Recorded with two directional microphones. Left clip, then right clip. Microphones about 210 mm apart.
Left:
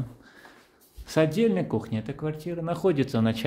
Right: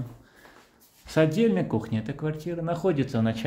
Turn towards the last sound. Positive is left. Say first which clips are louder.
# left 1 dB
turn(degrees=20)  # may be behind; listen again after turning